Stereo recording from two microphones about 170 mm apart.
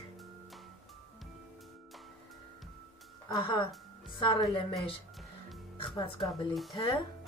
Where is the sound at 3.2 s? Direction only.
25° left (ahead or behind).